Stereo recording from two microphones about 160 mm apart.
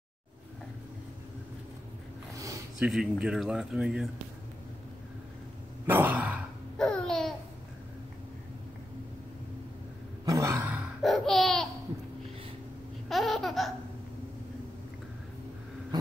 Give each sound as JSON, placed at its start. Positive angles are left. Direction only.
{"t": 2.3, "sound": "a sound", "side_deg": -20}
{"t": 2.8, "sound": "speech", "side_deg": -5}
{"t": 5.9, "sound": "sigh", "side_deg": -10}
{"t": 6.8, "sound": "babbling", "side_deg": 5}
{"t": 10.2, "sound": "a sound", "side_deg": -20}
{"t": 11.0, "sound": "laughter", "side_deg": 0}
{"t": 13.1, "sound": "laughter", "side_deg": 0}